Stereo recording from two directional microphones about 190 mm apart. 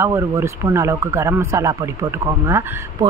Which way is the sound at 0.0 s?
15° right (ahead or behind).